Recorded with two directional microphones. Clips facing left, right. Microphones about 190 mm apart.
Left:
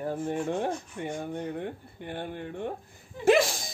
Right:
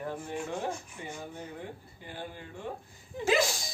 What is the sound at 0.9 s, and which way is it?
Speech, 55° left (ahead or behind).